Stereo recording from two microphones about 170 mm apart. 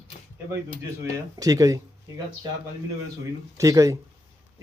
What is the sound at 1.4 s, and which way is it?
Speech, 20° right (ahead or behind).